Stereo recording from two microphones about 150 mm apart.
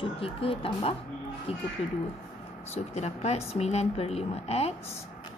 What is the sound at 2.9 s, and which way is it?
A woman's voice, 45° left (ahead or behind).